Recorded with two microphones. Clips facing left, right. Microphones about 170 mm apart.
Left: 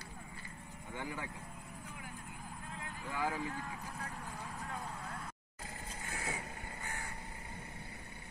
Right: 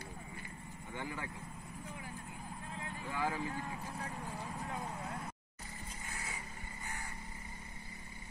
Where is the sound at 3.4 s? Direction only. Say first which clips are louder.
Right 1 dB; 15° right (ahead or behind).